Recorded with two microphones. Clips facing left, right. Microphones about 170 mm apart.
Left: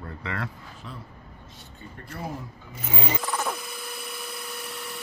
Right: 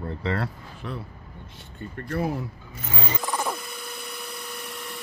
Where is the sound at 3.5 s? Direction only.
Centre (ahead or behind).